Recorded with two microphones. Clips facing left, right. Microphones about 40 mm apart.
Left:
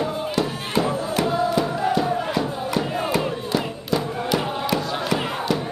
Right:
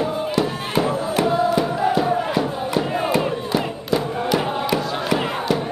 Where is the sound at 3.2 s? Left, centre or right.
Centre.